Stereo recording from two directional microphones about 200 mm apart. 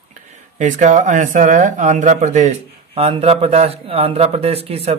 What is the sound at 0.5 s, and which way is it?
Speech, 40° right (ahead or behind).